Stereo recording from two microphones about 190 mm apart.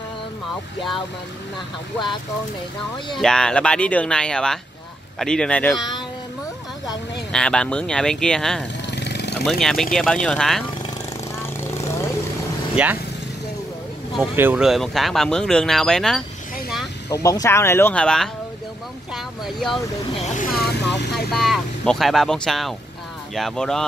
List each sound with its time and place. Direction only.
3.2 s speech: 5° left (ahead or behind)
7.3 s speech: 5° left (ahead or behind)
8.9 s a sound: 65° left (ahead or behind)
9.4 s speech: centre (ahead or behind)
12.8 s speech: 5° right (ahead or behind)
14.3 s speech: 10° right (ahead or behind)
17.1 s speech: 20° left (ahead or behind); by 19.8 s centre (ahead or behind)
20.2 s speech: 40° left (ahead or behind)
21.3 s speech: centre (ahead or behind)